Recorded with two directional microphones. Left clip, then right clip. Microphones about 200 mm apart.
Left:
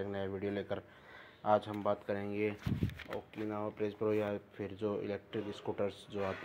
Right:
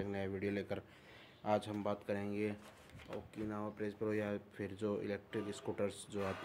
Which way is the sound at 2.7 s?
50° left (ahead or behind).